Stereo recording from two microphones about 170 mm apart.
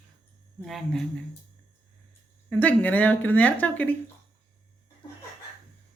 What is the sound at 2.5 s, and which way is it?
Speech, 10° left (ahead or behind).